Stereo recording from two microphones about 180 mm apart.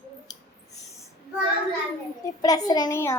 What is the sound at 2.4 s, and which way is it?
Speech, 20° left (ahead or behind).